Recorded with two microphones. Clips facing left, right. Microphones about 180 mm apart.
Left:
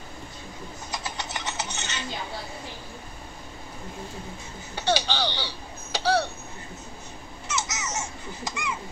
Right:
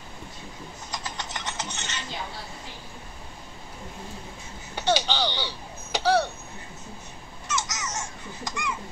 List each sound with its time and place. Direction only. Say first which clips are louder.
0.9 s a sound: left 1 dB; 10° left (ahead or behind)
4.7 s speech: right 1 dB; 20° right (ahead or behind)
7.4 s baby laughter: even; 5° left (ahead or behind)